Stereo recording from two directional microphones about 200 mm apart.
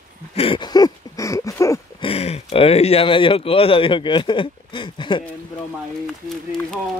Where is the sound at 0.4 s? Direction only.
25° left (ahead or behind).